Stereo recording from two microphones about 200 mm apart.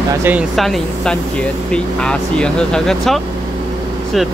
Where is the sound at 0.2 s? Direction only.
5° right (ahead or behind).